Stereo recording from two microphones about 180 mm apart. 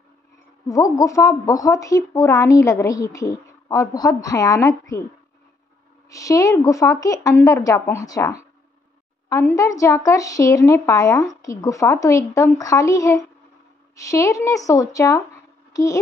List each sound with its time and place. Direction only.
0.7 s speech: 20° left (ahead or behind)
6.0 s a child's voice: 20° left (ahead or behind)